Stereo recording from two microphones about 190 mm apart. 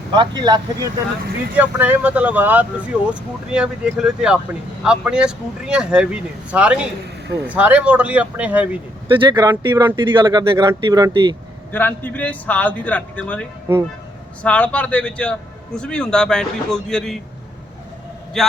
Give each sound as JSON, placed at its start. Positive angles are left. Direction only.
{"t": 0.1, "sound": "speech", "side_deg": -25}
{"t": 1.5, "sound": "a man's voice", "side_deg": -10}
{"t": 9.1, "sound": "speech", "side_deg": -25}
{"t": 11.7, "sound": "a man's voice", "side_deg": 10}
{"t": 18.4, "sound": "a man's voice", "side_deg": 0}